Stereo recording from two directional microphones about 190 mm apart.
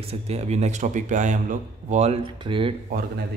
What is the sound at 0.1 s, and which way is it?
Speech, 35° right (ahead or behind).